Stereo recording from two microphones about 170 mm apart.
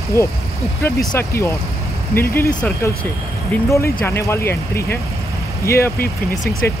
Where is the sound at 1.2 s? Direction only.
15° left (ahead or behind).